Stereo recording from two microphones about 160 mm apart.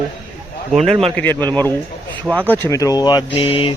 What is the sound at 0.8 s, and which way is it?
Speech, 40° right (ahead or behind).